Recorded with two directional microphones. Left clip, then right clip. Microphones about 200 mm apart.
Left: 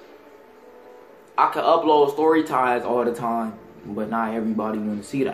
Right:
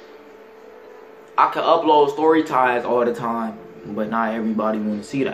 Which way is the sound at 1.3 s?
Centre (ahead or behind).